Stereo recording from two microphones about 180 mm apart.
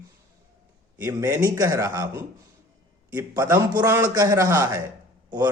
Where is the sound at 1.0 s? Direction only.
20° right (ahead or behind).